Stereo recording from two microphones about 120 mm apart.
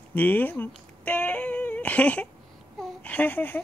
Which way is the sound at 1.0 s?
10° left (ahead or behind).